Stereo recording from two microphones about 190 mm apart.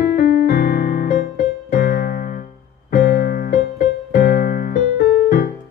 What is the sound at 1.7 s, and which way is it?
Keyboard, 50° left (ahead or behind).